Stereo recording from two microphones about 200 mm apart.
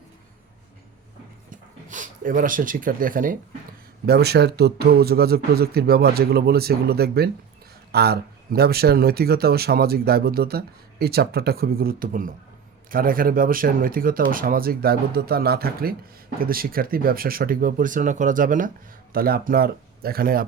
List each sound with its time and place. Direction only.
1.5 s dog: 40° right (ahead or behind)
4.0 s speech: 55° right (ahead or behind)